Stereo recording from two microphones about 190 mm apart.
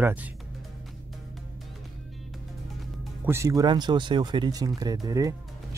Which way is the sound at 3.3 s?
15° right (ahead or behind).